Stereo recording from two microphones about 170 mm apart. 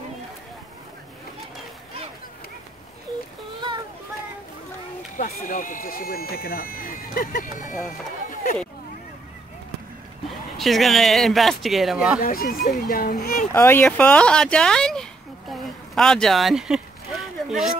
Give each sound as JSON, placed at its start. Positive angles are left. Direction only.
{"t": 5.1, "sound": "speech", "side_deg": 50}
{"t": 10.6, "sound": "speech", "side_deg": 0}
{"t": 12.2, "sound": "speech", "side_deg": 60}
{"t": 13.5, "sound": "speech", "side_deg": 15}